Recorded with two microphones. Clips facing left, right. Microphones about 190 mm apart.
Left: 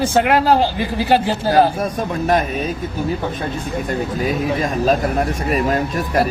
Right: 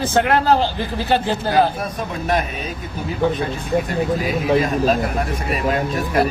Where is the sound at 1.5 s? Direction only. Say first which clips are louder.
Left 4 dB; 45° left (ahead or behind).